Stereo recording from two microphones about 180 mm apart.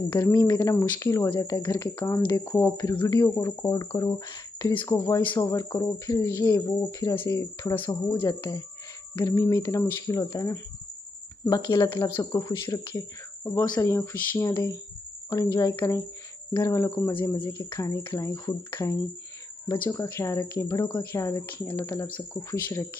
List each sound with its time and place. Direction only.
0.1 s speech: 20° left (ahead or behind)